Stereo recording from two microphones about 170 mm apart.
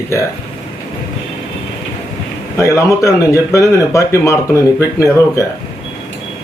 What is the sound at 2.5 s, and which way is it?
Speech, 20° left (ahead or behind).